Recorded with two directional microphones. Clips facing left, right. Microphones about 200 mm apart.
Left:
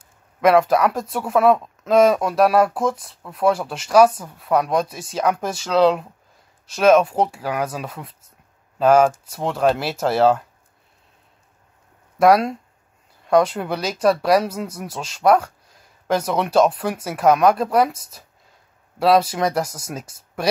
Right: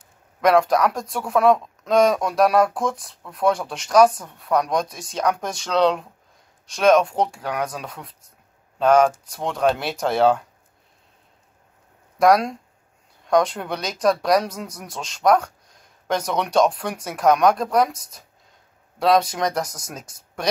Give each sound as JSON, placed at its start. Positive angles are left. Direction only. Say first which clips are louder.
{"t": 0.4, "sound": "speech", "louder": "left 2 dB", "side_deg": 5}
{"t": 12.2, "sound": "speech", "louder": "left 2 dB", "side_deg": 5}